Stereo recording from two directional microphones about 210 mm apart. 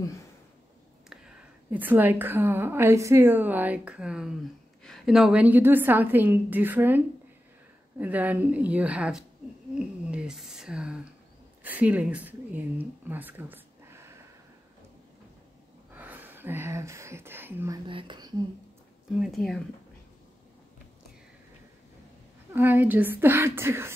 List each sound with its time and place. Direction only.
1.1 s a woman's voice: 5° right (ahead or behind)
8.0 s a woman's voice: 5° right (ahead or behind)
9.8 s a sound: 5° right (ahead or behind)
11.6 s speech: 5° right (ahead or behind)
15.9 s speech: 10° right (ahead or behind)
17.8 s speech: 25° right (ahead or behind)
19.1 s speech: centre (ahead or behind)
22.5 s a woman's voice: 10° right (ahead or behind)